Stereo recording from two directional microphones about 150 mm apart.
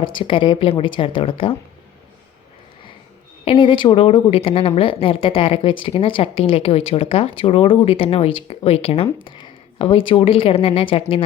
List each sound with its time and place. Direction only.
0.0 s a woman's voice: 35° left (ahead or behind)
3.4 s a woman's voice: 35° left (ahead or behind)